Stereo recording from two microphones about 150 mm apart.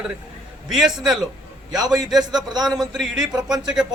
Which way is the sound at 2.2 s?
25° right (ahead or behind).